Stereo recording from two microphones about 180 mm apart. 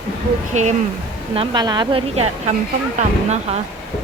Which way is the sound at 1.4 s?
25° right (ahead or behind).